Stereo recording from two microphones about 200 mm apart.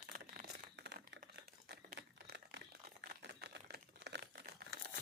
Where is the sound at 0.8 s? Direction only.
55° right (ahead or behind).